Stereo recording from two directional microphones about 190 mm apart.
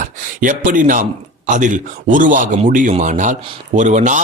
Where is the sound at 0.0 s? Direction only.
45° right (ahead or behind).